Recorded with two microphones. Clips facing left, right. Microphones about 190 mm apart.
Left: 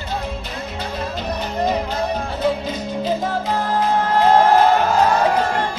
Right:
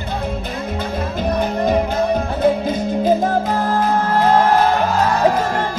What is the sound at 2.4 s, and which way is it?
Music, 50° right (ahead or behind).